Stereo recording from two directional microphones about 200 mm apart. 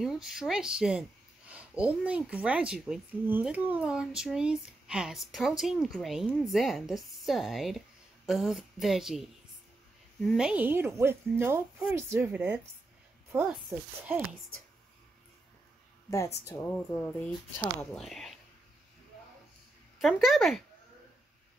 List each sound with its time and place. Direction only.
0.0 s speech: centre (ahead or behind)
10.2 s speech: 5° right (ahead or behind)
16.4 s speech: 10° left (ahead or behind)
20.0 s speech: centre (ahead or behind)